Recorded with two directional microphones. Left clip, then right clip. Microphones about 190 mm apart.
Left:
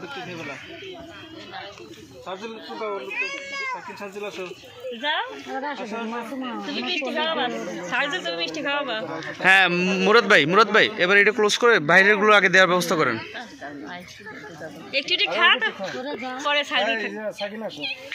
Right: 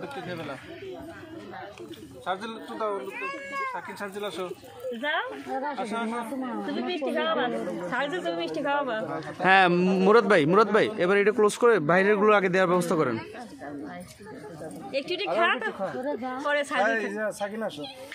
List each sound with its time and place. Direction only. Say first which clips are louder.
2.2 s a man's voice: right 2 dB; 10° right (ahead or behind)
5.5 s a man's voice: left 1 dB; 10° right (ahead or behind)
7.2 s speech: even; 50° right (ahead or behind)
9.2 s a man's voice: left 3 dB; 20° right (ahead or behind)
14.9 s speech: left 6 dB; 50° right (ahead or behind)
17.2 s speech: even; centre (ahead or behind)